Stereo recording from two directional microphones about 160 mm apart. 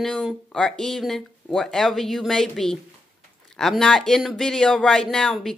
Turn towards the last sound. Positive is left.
turn(degrees=0)  # may be behind; listen again after turning